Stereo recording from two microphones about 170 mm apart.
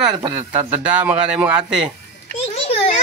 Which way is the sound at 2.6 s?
35° left (ahead or behind).